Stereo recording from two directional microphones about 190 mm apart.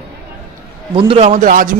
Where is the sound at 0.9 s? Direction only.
30° right (ahead or behind); by 1.8 s 45° right (ahead or behind).